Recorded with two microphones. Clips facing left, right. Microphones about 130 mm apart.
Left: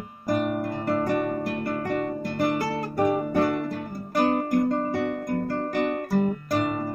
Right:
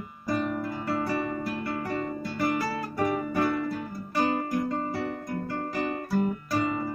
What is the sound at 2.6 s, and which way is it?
Guitar, 50° left (ahead or behind).